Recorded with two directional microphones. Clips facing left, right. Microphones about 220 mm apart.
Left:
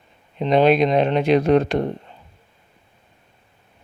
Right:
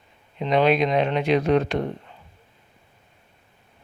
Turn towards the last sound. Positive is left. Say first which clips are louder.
# left 4 dB
turn(degrees=45)  # may be behind; listen again after turning